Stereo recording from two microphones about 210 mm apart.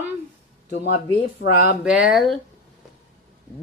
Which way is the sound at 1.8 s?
5° right (ahead or behind).